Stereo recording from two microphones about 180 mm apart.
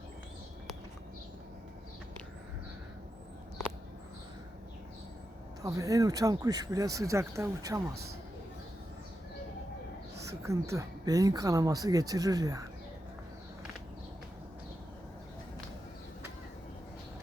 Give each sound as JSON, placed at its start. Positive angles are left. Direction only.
{"t": 5.6, "sound": "speech", "side_deg": -20}
{"t": 10.4, "sound": "speech", "side_deg": -15}